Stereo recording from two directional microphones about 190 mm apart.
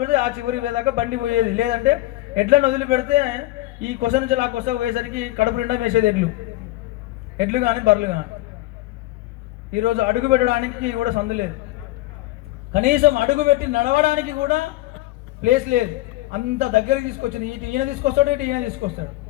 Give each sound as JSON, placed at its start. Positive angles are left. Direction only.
{"t": 0.0, "sound": "a man's voice", "side_deg": -45}
{"t": 7.3, "sound": "a man's voice", "side_deg": -45}
{"t": 9.8, "sound": "a man's voice", "side_deg": -45}
{"t": 12.7, "sound": "a man's voice", "side_deg": -45}